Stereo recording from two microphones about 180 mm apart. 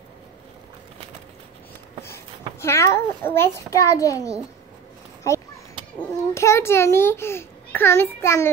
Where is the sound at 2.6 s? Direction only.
15° left (ahead or behind).